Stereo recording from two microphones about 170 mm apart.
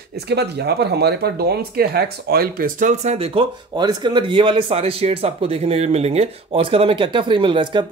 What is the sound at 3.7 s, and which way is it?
Speech, 25° right (ahead or behind).